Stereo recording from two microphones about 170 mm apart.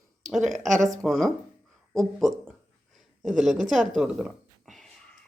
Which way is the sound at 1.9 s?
Centre (ahead or behind).